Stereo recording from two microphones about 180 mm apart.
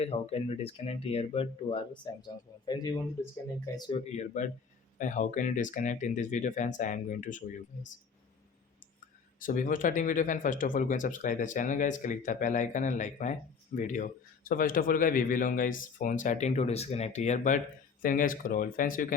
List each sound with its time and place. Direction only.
0.0 s speech: 35° left (ahead or behind)
4.1 s speech: 40° left (ahead or behind)
9.4 s speech: 50° left (ahead or behind)